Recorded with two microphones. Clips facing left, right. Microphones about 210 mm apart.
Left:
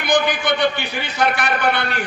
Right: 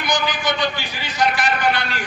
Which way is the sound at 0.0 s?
60° left (ahead or behind).